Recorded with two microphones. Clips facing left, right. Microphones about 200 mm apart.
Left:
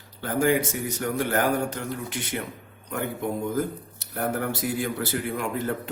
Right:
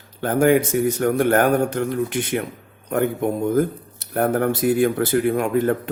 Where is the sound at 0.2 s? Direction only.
55° right (ahead or behind).